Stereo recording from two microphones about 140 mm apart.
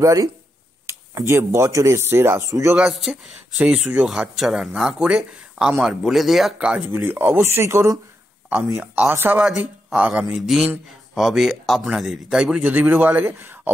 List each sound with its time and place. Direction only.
0.0 s speech: 25° right (ahead or behind)
2.7 s speech: 5° right (ahead or behind)